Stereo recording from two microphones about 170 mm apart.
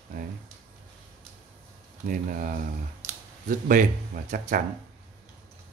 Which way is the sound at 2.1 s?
55° right (ahead or behind).